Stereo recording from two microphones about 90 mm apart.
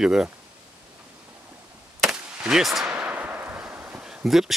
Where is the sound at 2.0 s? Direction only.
5° right (ahead or behind).